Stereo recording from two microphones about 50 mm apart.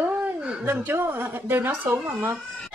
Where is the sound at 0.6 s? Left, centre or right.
Right.